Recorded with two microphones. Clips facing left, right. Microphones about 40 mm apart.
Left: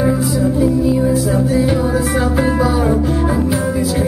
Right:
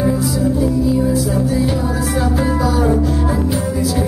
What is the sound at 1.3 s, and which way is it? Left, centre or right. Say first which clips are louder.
Music: left 2 dB; left.